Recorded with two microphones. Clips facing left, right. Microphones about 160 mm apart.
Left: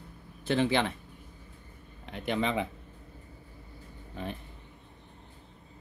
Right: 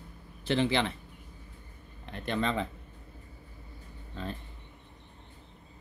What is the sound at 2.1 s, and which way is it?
Speech, 15° left (ahead or behind).